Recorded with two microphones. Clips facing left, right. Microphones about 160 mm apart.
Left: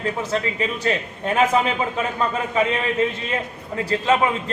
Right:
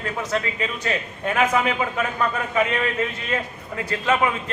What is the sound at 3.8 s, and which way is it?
Speech, 30° left (ahead or behind).